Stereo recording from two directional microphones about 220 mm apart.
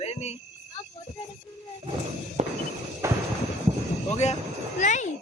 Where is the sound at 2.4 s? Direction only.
30° right (ahead or behind).